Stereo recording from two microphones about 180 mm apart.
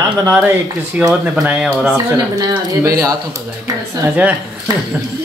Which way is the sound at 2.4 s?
20° right (ahead or behind).